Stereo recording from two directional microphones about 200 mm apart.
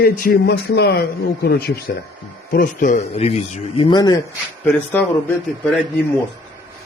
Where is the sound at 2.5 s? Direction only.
45° left (ahead or behind); by 4.2 s 20° left (ahead or behind).